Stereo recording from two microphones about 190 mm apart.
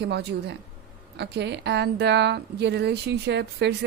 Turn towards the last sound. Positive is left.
turn(degrees=-65)  # may be behind; listen again after turning